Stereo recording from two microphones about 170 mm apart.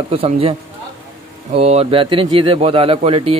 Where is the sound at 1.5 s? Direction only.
35° right (ahead or behind).